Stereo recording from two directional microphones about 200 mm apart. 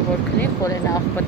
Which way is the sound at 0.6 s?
15° left (ahead or behind).